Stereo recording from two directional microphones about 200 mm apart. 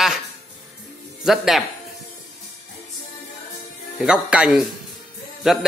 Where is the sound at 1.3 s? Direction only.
Centre (ahead or behind).